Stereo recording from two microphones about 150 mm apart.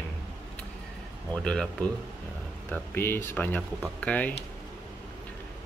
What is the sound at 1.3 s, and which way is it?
Speech, 5° left (ahead or behind).